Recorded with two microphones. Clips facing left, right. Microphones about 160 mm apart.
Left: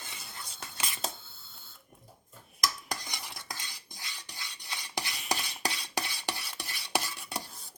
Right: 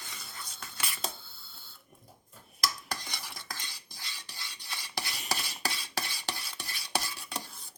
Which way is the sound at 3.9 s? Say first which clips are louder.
Left 2 dB; 15° left (ahead or behind).